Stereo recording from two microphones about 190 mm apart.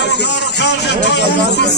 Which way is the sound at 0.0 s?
65° left (ahead or behind).